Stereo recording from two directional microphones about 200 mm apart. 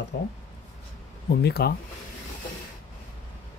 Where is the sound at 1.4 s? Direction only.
55° left (ahead or behind).